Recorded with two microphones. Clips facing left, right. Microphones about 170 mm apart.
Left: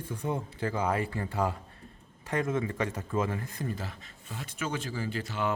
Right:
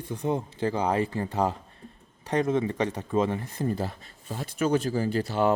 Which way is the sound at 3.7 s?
35° right (ahead or behind).